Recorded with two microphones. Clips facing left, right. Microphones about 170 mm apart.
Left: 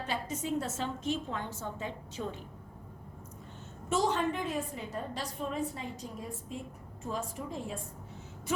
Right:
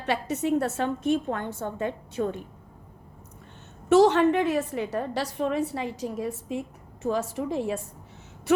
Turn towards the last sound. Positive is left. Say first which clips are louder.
# right 10 dB
turn(degrees=-75)  # may be behind; listen again after turning